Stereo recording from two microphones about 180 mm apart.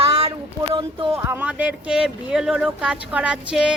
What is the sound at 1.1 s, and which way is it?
Speech, 15° right (ahead or behind).